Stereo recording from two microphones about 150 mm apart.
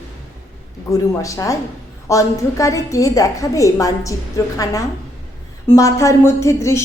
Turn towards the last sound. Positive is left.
turn(degrees=20)  # may be behind; listen again after turning